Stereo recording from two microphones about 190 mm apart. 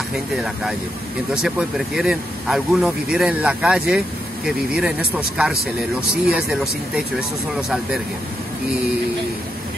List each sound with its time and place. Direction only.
1.3 s speech: 5° right (ahead or behind)